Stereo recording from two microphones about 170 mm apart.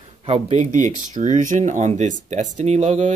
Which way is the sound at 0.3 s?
40° right (ahead or behind).